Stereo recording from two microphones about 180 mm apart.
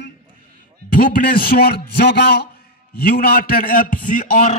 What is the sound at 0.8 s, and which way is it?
A man's voice, 50° left (ahead or behind).